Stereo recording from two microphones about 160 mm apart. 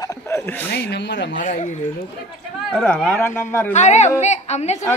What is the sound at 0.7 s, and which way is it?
Speech, 90° left.